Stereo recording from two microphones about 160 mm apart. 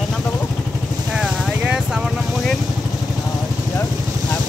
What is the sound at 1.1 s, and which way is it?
Vehicle, 5° right (ahead or behind).